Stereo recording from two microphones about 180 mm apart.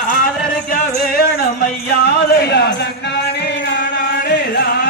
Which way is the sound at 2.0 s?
65° left (ahead or behind).